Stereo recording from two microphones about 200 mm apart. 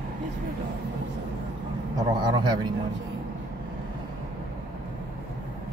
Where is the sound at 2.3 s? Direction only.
20° right (ahead or behind).